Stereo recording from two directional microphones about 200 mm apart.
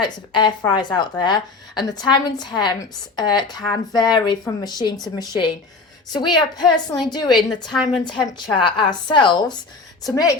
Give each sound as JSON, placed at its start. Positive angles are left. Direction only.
{"t": 0.0, "sound": "speech", "side_deg": 25}